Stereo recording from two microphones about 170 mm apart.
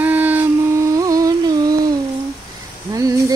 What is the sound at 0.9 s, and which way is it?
Music, 20° right (ahead or behind).